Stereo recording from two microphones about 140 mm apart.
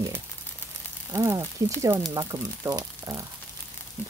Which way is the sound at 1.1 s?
20° right (ahead or behind).